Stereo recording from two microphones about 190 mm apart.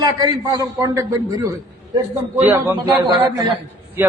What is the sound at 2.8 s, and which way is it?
Speech, 25° right (ahead or behind).